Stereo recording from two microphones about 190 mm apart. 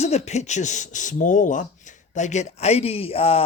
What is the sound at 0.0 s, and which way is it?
Speech, 35° left (ahead or behind).